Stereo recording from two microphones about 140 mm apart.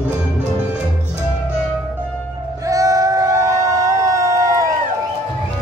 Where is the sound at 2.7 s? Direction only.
25° right (ahead or behind).